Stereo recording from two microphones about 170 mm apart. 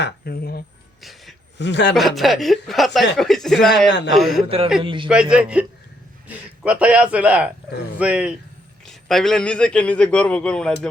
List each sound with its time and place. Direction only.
0.0 s speech: 65° left (ahead or behind)
1.0 s a sound: centre (ahead or behind)
1.5 s a man's voice: 90° left
2.0 s speech: centre (ahead or behind)
4.4 s a man's voice: 35° right (ahead or behind)
5.0 s speech: 5° right (ahead or behind)